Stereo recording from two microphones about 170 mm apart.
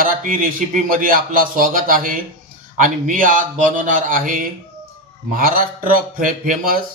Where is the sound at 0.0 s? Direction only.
55° right (ahead or behind).